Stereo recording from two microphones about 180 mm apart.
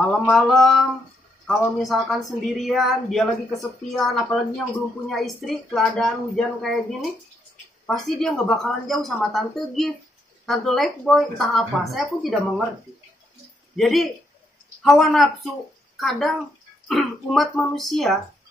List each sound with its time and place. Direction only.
0.3 s a woman's voice: centre (ahead or behind)
1.8 s a woman's voice: centre (ahead or behind)
13.7 s a woman's voice: centre (ahead or behind)